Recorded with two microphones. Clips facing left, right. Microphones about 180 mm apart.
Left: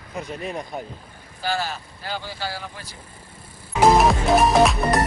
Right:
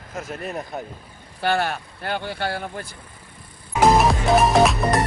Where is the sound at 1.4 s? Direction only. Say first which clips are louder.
Right 4 dB; 60° right (ahead or behind).